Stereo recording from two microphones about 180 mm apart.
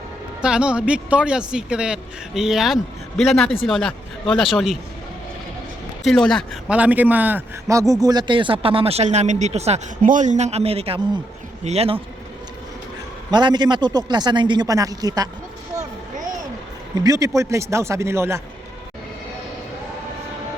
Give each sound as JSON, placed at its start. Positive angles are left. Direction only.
{"t": 0.4, "sound": "speech", "side_deg": -5}
{"t": 6.1, "sound": "a man's voice", "side_deg": 5}
{"t": 13.3, "sound": "speech", "side_deg": -25}
{"t": 17.0, "sound": "a man's voice", "side_deg": -20}